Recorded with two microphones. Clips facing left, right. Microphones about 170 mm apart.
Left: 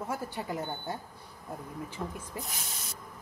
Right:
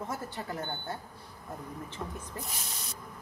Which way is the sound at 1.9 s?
10° left (ahead or behind).